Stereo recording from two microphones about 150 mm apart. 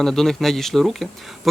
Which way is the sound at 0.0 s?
5° left (ahead or behind).